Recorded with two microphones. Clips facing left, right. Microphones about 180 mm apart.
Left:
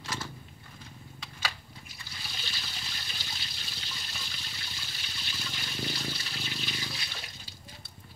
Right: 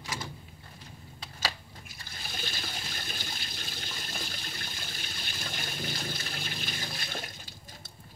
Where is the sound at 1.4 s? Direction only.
40° right (ahead or behind).